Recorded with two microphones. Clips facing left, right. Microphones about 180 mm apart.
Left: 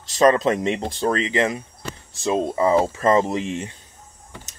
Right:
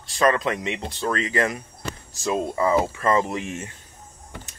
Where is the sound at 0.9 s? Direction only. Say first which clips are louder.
Left 1 dB; 30° left (ahead or behind).